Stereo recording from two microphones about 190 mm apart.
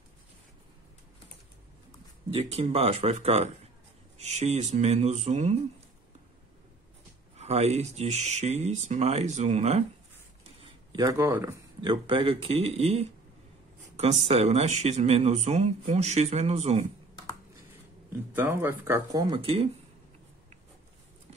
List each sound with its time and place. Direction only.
2.3 s speech: 30° right (ahead or behind)
7.3 s speech: 35° right (ahead or behind)
10.9 s speech: 20° right (ahead or behind); by 16.8 s 35° right (ahead or behind)
18.3 s speech: 10° right (ahead or behind); by 19.7 s 30° right (ahead or behind)